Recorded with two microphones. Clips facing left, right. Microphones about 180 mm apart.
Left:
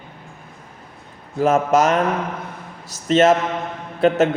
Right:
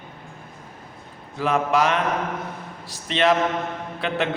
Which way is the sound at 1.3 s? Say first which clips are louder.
Left 5 dB; 45° left (ahead or behind).